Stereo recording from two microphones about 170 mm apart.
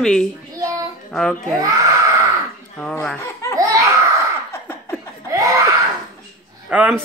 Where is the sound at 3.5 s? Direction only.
20° right (ahead or behind).